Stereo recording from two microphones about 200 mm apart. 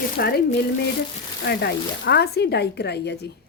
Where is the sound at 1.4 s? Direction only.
55° left (ahead or behind).